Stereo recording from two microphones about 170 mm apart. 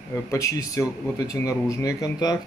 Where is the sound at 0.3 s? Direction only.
20° left (ahead or behind).